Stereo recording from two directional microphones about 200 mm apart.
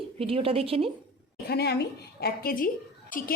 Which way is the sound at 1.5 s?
55° left (ahead or behind).